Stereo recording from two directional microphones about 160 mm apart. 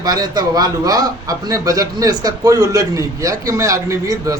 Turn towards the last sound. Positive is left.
turn(degrees=-20)  # may be behind; listen again after turning